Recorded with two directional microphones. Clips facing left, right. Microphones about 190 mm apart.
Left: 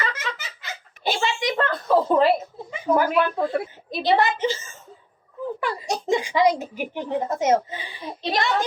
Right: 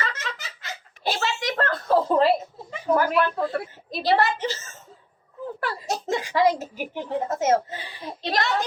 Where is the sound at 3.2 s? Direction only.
15° left (ahead or behind).